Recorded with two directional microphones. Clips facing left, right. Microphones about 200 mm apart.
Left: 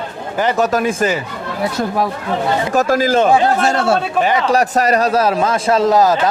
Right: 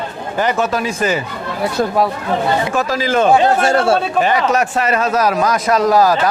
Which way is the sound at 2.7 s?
45° left (ahead or behind).